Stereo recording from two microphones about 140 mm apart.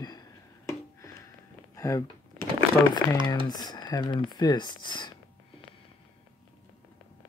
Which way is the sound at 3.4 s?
30° left (ahead or behind).